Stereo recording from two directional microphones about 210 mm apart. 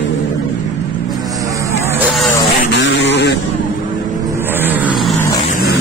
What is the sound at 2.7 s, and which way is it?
Vehicle, 55° left (ahead or behind).